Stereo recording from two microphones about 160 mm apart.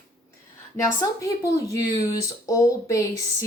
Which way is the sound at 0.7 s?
20° left (ahead or behind).